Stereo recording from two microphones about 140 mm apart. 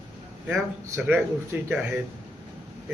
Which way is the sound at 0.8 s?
15° right (ahead or behind).